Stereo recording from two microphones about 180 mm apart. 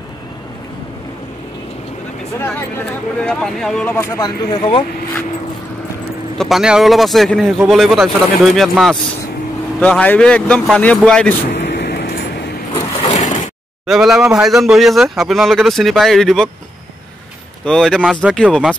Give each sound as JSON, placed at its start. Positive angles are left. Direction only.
{"t": 3.2, "sound": "speech", "side_deg": 5}
{"t": 6.3, "sound": "a man's voice", "side_deg": 0}
{"t": 11.5, "sound": "vehicle", "side_deg": 75}
{"t": 13.0, "sound": "a sound", "side_deg": 40}
{"t": 13.8, "sound": "a man's voice", "side_deg": 0}
{"t": 17.6, "sound": "a man's voice", "side_deg": 5}